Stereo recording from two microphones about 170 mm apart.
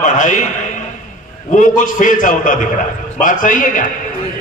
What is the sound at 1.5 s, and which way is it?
A man's voice, 50° left (ahead or behind).